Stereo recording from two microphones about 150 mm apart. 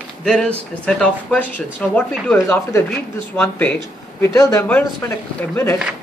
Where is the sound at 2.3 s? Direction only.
20° left (ahead or behind).